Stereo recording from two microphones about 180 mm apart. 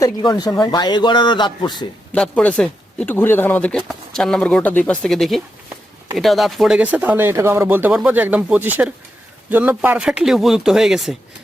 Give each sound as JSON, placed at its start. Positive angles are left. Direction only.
{"t": 0.0, "sound": "a man's voice", "side_deg": 25}
{"t": 2.1, "sound": "speech", "side_deg": 5}